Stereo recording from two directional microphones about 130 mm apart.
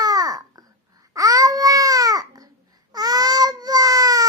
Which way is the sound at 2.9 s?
30° right (ahead or behind).